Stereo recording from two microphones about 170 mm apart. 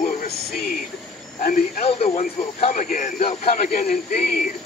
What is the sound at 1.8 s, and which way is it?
A man's voice, 35° left (ahead or behind).